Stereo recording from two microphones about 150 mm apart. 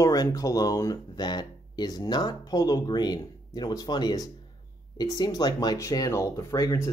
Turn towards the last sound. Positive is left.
turn(degrees=20)  # may be behind; listen again after turning